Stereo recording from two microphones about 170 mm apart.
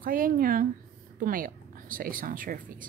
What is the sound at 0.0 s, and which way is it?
A woman's voice, 55° right (ahead or behind).